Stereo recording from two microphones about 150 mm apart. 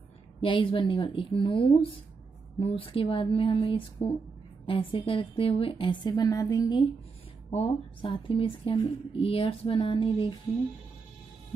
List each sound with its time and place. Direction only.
0.4 s a woman's voice: 35° left (ahead or behind)
7.5 s speech: 45° left (ahead or behind)